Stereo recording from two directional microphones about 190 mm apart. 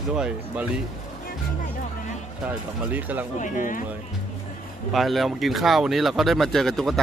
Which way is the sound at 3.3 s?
45° left (ahead or behind).